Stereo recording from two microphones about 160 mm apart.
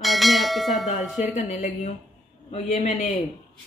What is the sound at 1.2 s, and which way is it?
Speech, 45° left (ahead or behind).